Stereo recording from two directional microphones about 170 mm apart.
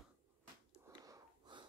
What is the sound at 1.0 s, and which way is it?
Wheeze, 25° right (ahead or behind).